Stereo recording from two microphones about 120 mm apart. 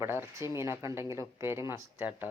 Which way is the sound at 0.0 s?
20° right (ahead or behind).